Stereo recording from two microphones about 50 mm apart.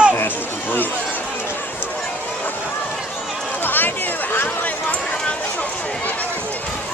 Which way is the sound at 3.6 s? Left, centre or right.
Left.